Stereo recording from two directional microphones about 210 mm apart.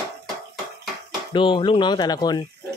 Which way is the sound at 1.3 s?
25° left (ahead or behind).